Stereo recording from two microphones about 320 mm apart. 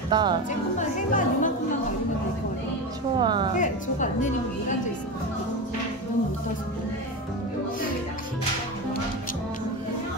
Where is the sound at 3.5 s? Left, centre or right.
Left.